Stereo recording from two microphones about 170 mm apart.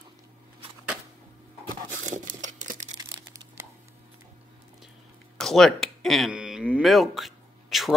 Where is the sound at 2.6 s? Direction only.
45° right (ahead or behind).